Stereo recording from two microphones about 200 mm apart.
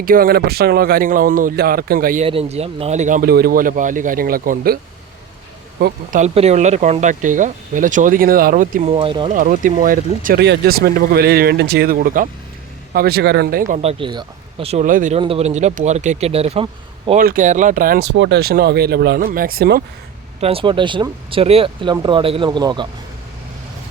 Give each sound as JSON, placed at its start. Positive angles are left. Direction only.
{"t": 0.0, "sound": "speech", "side_deg": -45}
{"t": 2.2, "sound": "speech", "side_deg": -30}
{"t": 5.8, "sound": "speech", "side_deg": -40}
{"t": 8.9, "sound": "speech", "side_deg": -25}
{"t": 9.3, "sound": "speech", "side_deg": -40}
{"t": 15.2, "sound": "speech", "side_deg": -30}
{"t": 17.2, "sound": "speech", "side_deg": -45}
{"t": 20.4, "sound": "speech", "side_deg": -30}